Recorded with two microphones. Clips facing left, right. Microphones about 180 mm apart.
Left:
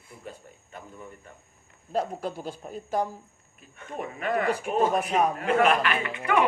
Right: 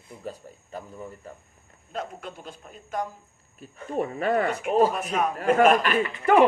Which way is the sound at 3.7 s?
35° right (ahead or behind).